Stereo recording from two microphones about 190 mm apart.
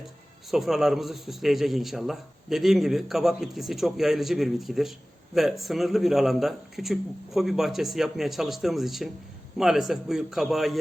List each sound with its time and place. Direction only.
0.5 s a man's voice: centre (ahead or behind)